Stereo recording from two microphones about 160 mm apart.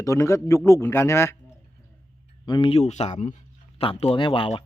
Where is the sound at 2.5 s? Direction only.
35° left (ahead or behind).